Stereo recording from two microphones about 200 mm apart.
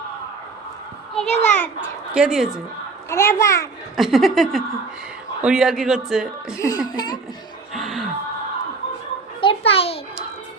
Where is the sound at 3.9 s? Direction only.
Centre (ahead or behind).